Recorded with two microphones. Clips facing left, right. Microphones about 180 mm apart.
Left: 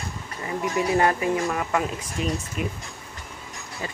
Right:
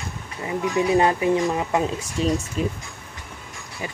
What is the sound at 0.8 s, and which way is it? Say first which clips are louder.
Speech: right 3 dB; 20° right (ahead or behind).